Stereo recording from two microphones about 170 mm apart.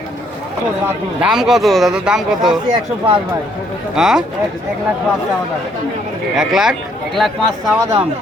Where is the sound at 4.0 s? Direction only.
5° right (ahead or behind).